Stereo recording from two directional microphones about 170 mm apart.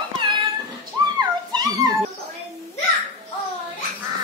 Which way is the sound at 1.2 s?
25° right (ahead or behind).